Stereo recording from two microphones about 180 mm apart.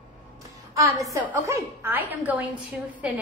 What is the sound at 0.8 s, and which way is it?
A woman's voice, 15° right (ahead or behind).